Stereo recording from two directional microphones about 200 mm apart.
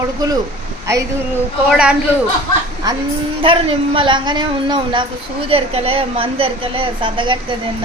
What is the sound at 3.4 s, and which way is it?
A woman's voice, 25° right (ahead or behind).